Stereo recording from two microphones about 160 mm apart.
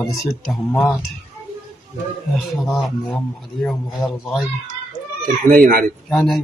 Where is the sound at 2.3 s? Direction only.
Centre (ahead or behind).